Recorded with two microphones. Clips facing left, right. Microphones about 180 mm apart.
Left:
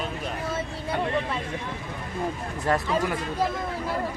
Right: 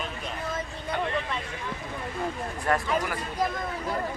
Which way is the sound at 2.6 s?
25° left (ahead or behind).